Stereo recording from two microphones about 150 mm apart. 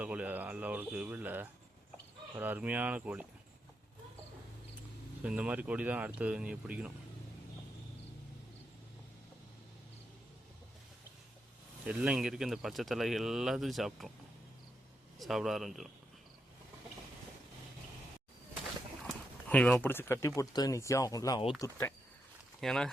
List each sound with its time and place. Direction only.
0.0 s speech: 10° right (ahead or behind)
5.2 s speech: 10° right (ahead or behind)
11.9 s speech: 5° right (ahead or behind)
15.2 s speech: centre (ahead or behind)
19.5 s speech: 5° left (ahead or behind)
22.6 s speech: 5° left (ahead or behind)